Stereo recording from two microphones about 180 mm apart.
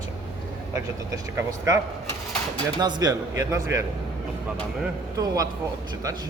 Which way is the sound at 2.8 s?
25° right (ahead or behind).